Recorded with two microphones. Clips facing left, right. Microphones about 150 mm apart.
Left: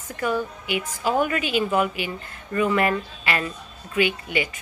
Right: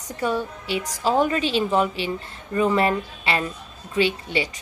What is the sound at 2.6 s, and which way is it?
Speech, 30° right (ahead or behind).